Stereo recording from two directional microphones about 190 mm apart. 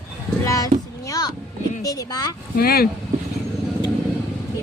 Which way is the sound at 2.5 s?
50° left (ahead or behind).